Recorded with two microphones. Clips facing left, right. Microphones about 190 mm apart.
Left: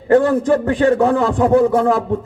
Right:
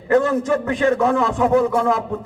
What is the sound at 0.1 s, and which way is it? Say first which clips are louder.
A man's voice: left 4 dB; 35° left (ahead or behind).